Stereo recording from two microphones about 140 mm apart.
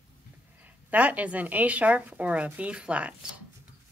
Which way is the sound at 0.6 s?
10° right (ahead or behind).